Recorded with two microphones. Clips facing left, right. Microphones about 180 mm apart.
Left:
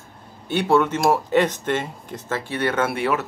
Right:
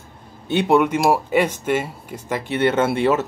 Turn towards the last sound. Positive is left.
turn(degrees=-25)  # may be behind; listen again after turning